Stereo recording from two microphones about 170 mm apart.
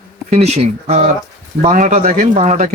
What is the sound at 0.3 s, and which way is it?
Speech, 40° right (ahead or behind).